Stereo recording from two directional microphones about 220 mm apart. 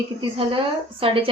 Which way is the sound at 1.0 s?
25° right (ahead or behind).